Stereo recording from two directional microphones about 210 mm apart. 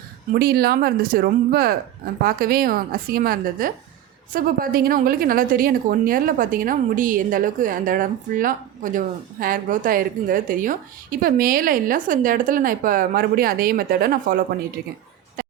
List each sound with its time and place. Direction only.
0.3 s a woman's voice: 45° right (ahead or behind)